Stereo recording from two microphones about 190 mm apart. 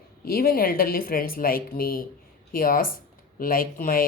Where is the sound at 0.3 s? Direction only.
50° left (ahead or behind).